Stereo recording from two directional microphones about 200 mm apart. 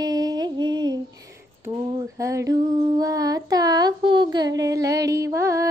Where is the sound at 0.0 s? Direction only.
20° right (ahead or behind).